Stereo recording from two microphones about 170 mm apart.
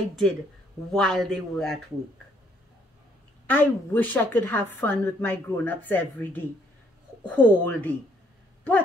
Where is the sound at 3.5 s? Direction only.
10° left (ahead or behind).